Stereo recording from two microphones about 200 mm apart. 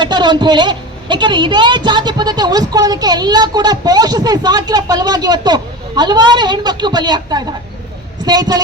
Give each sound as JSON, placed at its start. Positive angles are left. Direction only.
{"t": 0.0, "sound": "a woman's voice", "side_deg": -20}